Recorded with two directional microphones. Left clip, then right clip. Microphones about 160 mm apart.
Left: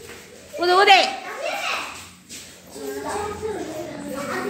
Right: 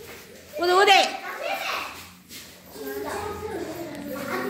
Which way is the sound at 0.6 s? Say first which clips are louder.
Left 3 dB; centre (ahead or behind).